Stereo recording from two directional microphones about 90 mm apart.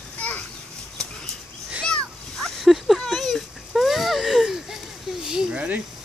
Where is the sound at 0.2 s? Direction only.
15° left (ahead or behind).